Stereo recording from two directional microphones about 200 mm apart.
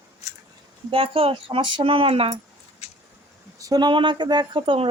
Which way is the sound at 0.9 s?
30° right (ahead or behind).